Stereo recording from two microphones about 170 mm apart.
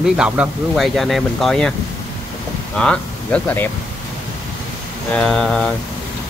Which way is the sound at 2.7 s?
5° left (ahead or behind).